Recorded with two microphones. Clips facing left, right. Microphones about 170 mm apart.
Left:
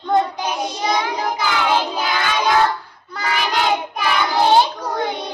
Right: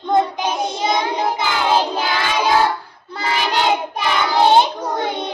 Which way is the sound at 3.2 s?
30° right (ahead or behind).